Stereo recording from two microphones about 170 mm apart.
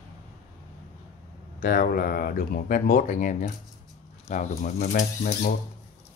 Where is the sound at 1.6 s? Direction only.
55° left (ahead or behind).